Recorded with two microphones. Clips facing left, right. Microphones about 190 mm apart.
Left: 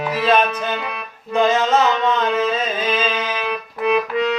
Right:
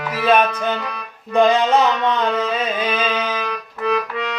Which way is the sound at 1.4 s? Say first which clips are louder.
Right 2 dB; 15° right (ahead or behind).